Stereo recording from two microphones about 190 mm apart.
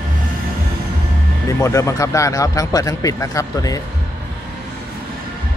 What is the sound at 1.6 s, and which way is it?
A man's voice, 15° left (ahead or behind).